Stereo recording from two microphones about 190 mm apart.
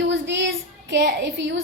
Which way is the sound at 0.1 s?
70° right (ahead or behind).